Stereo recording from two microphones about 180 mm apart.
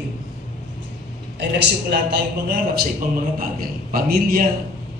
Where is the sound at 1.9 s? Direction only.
60° right (ahead or behind).